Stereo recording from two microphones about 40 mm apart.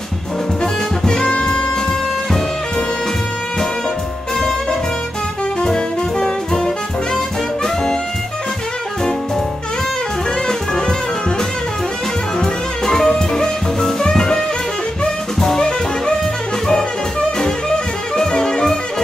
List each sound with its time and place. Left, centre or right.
1.0 s jazz: centre
5.6 s music: centre
10.7 s music: centre
12.4 s music: centre
15.4 s jazz: centre
18.1 s music: centre